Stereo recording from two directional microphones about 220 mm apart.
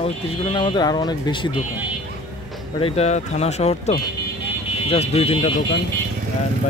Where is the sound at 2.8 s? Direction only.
30° left (ahead or behind).